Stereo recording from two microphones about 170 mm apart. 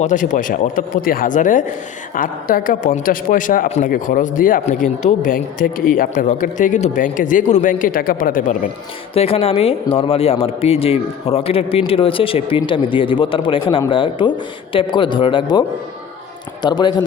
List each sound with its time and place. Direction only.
0.0 s speech: 50° left (ahead or behind)
9.1 s a man's voice: 35° left (ahead or behind)